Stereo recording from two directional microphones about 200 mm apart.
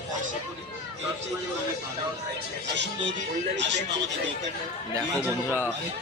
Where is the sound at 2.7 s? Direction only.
60° right (ahead or behind).